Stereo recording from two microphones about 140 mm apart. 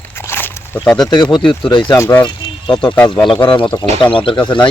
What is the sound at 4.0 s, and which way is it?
Speech, 35° left (ahead or behind).